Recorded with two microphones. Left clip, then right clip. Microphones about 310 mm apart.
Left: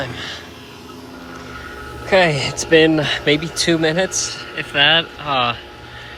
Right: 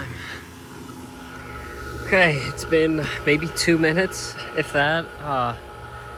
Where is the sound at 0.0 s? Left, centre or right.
Centre.